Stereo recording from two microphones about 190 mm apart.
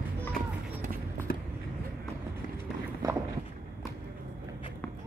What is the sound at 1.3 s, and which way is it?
Vehicle, 50° left (ahead or behind).